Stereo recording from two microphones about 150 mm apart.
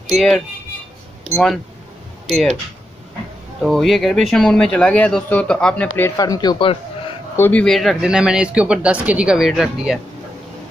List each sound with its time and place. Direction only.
0.1 s speech: 5° left (ahead or behind)
3.6 s speech: centre (ahead or behind)
6.1 s speech: 25° left (ahead or behind)
7.3 s speech: 10° left (ahead or behind)